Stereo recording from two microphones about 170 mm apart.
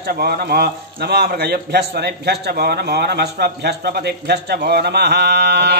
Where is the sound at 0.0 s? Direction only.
65° right (ahead or behind).